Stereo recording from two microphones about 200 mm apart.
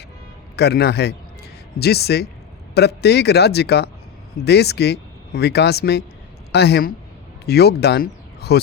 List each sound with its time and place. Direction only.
0.5 s speech: 55° left (ahead or behind)